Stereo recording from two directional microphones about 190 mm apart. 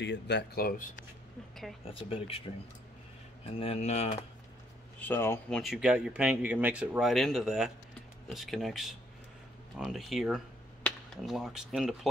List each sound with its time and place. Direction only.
0.0 s speech: 65° left (ahead or behind); by 0.9 s 50° left (ahead or behind)
2.0 s speech: 30° left (ahead or behind)
3.5 s speech: 30° left (ahead or behind)
5.0 s speech: 10° left (ahead or behind)
5.6 s speech: centre (ahead or behind)